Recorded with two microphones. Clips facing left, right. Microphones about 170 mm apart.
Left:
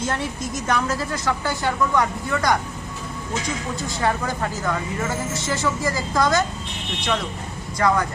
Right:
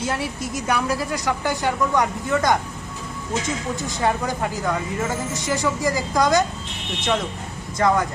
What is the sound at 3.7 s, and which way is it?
A woman's voice, 20° right (ahead or behind).